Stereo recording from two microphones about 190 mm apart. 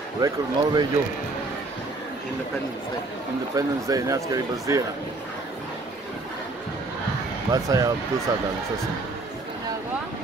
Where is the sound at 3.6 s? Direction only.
15° right (ahead or behind).